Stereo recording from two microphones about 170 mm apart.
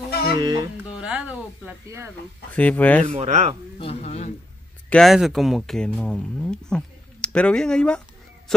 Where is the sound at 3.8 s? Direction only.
40° left (ahead or behind).